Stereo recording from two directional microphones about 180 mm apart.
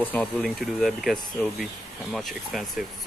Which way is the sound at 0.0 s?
10° left (ahead or behind).